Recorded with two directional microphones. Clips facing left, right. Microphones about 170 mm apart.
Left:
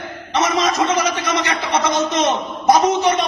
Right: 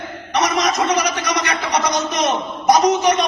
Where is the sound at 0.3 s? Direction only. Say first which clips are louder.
Left 1 dB; 25° left (ahead or behind).